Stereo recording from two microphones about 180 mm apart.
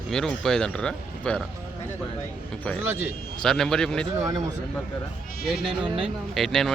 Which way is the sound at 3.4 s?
5° left (ahead or behind).